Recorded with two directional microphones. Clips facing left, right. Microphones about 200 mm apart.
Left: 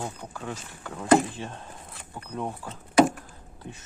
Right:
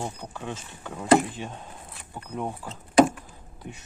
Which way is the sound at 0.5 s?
10° right (ahead or behind).